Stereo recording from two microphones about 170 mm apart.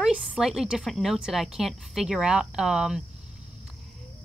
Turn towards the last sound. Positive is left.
turn(degrees=-5)  # may be behind; listen again after turning